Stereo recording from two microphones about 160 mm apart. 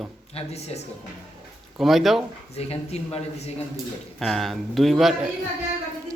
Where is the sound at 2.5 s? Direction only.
40° left (ahead or behind).